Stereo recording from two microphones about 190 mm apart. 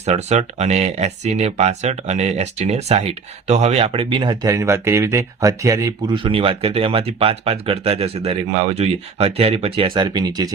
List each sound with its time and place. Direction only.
0.0 s speech: 35° right (ahead or behind); by 10.5 s 20° right (ahead or behind)